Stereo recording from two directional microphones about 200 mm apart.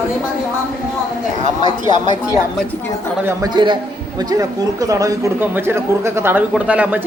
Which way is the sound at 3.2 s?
20° right (ahead or behind).